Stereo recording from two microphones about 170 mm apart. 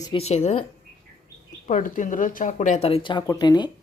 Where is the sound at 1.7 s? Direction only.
50° left (ahead or behind); by 3.6 s 25° left (ahead or behind).